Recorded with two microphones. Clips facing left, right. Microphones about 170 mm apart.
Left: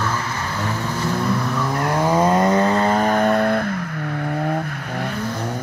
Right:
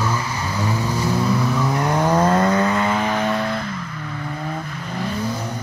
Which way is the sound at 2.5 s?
35° left (ahead or behind).